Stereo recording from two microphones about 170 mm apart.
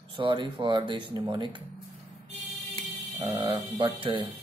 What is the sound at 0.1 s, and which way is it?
Speech, 25° right (ahead or behind).